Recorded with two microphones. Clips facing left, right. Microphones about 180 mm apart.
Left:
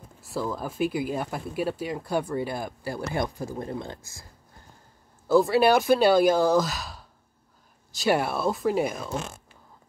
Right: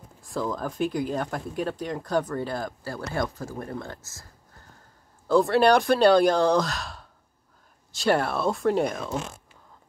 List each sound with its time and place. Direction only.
0.2 s speech: 5° left (ahead or behind)
5.3 s speech: 5° left (ahead or behind)